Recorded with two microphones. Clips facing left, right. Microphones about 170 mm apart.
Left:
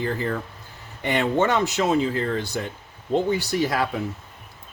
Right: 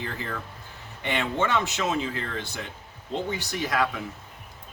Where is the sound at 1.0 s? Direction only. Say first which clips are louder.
Left 6 dB; 40° left (ahead or behind).